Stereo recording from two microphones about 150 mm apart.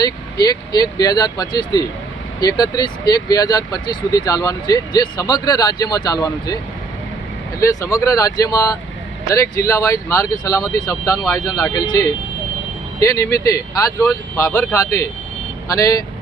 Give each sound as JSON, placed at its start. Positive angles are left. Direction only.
{"t": 0.4, "sound": "speech", "side_deg": 25}
{"t": 7.6, "sound": "speech", "side_deg": 20}